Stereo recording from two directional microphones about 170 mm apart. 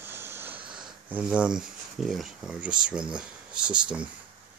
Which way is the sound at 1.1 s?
5° right (ahead or behind).